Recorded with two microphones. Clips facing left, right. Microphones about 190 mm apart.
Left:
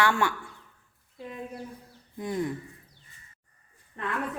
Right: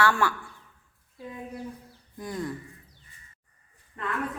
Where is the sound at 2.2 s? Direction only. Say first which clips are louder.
Left 3 dB; 20° left (ahead or behind).